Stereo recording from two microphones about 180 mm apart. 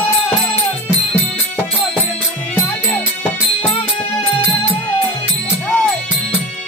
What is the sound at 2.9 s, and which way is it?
Music, 10° left (ahead or behind).